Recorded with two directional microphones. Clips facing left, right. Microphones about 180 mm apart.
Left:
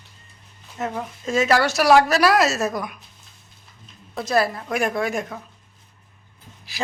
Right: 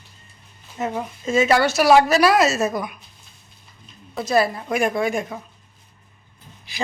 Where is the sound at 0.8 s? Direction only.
Centre (ahead or behind).